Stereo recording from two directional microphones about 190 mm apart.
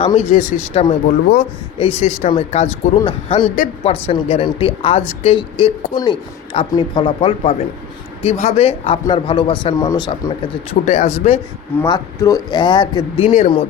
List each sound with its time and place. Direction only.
0.1 s a woman's voice: 35° left (ahead or behind)
11.8 s a woman's voice: 15° left (ahead or behind); by 13.7 s 30° left (ahead or behind)